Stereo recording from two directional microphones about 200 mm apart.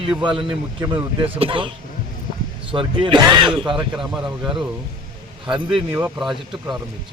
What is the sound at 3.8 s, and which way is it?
Speech, centre (ahead or behind).